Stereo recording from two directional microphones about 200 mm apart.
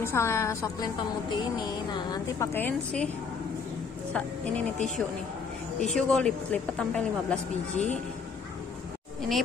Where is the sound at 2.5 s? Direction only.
10° left (ahead or behind).